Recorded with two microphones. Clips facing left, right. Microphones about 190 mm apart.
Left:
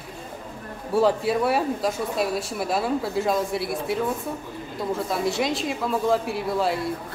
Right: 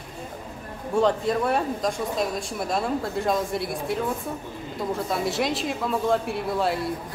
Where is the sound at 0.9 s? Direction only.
5° left (ahead or behind).